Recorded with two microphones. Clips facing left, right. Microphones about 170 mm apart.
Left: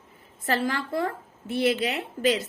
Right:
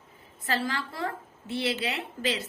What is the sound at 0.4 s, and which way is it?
A woman's voice, 55° left (ahead or behind).